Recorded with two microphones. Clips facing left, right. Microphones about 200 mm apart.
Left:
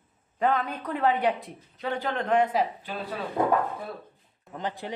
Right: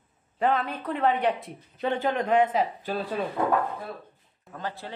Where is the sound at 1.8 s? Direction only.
20° right (ahead or behind).